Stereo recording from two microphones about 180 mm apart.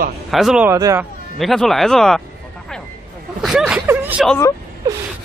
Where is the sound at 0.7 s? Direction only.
15° right (ahead or behind).